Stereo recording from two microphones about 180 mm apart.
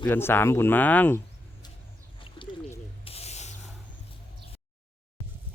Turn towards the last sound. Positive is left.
turn(degrees=40)  # may be behind; listen again after turning